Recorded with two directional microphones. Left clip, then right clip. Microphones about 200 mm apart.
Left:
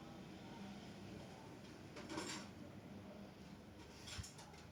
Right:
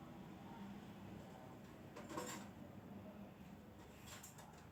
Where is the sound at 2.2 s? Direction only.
40° right (ahead or behind).